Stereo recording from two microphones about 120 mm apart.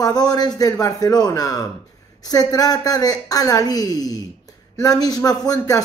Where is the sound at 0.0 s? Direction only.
35° left (ahead or behind).